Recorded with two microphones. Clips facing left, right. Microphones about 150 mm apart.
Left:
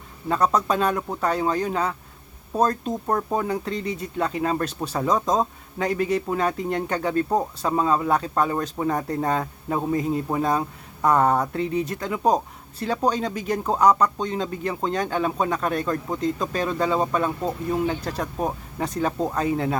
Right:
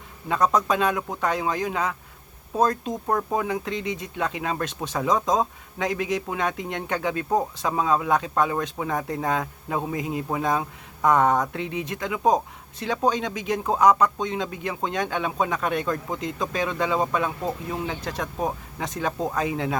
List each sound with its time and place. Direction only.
0.3 s speech: centre (ahead or behind)
11.6 s speech: 40° left (ahead or behind)
11.9 s speech: centre (ahead or behind)